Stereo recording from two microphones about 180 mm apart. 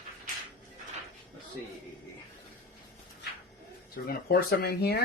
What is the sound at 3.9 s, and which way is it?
Speech, 60° left (ahead or behind).